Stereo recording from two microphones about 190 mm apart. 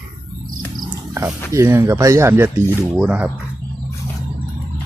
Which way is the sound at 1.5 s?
15° right (ahead or behind).